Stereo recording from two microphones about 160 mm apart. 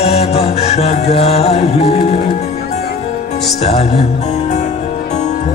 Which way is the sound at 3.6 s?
40° left (ahead or behind).